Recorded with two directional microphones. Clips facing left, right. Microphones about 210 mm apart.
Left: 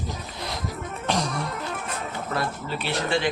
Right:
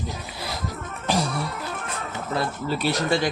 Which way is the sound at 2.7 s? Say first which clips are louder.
Right 3 dB; 40° right (ahead or behind).